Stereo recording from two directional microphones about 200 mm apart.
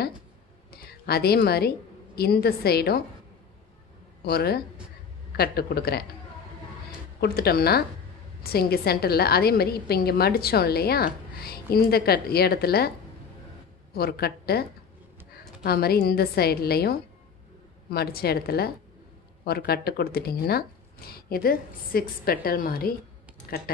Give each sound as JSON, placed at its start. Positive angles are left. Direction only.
{"t": 0.7, "sound": "a sound", "side_deg": 50}
{"t": 2.1, "sound": "speech", "side_deg": 50}
{"t": 4.2, "sound": "a man's voice", "side_deg": 50}
{"t": 7.2, "sound": "speech", "side_deg": 50}
{"t": 13.9, "sound": "a woman's voice", "side_deg": 50}